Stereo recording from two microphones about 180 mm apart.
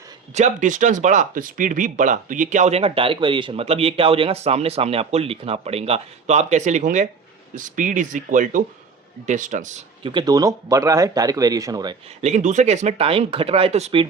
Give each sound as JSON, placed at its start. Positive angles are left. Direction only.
{"t": 0.3, "sound": "speech", "side_deg": -40}
{"t": 10.0, "sound": "speech", "side_deg": -25}
{"t": 12.2, "sound": "speech", "side_deg": -40}